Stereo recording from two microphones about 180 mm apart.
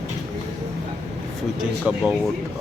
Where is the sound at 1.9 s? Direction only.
5° right (ahead or behind).